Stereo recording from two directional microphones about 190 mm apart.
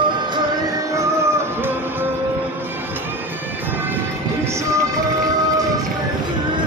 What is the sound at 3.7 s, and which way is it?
Vehicle, 10° right (ahead or behind).